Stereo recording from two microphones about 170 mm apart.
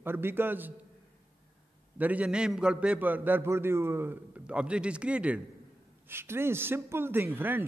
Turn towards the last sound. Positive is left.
turn(degrees=-10)  # may be behind; listen again after turning